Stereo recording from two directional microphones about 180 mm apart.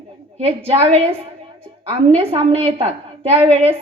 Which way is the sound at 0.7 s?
35° right (ahead or behind).